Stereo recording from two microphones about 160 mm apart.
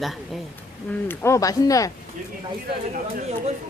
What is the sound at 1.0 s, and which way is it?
Speech, 15° left (ahead or behind).